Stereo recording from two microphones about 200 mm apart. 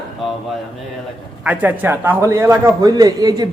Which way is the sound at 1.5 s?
10° right (ahead or behind).